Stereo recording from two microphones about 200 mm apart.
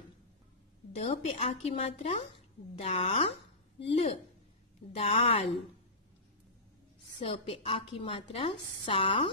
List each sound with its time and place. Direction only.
0.9 s a woman's voice: 30° left (ahead or behind)
7.2 s a woman's voice: 25° left (ahead or behind)